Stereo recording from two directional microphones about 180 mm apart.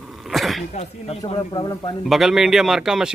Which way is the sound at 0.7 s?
30° left (ahead or behind).